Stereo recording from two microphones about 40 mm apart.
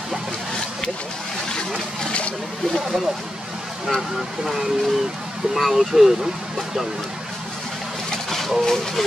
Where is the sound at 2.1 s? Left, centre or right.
Left.